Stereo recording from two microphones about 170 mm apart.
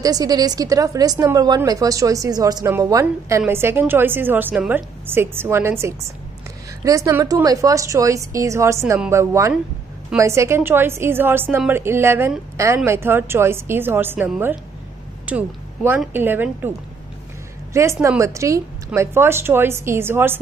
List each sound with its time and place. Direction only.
0.0 s a woman's voice: 20° right (ahead or behind)
17.7 s a woman's voice: 15° right (ahead or behind)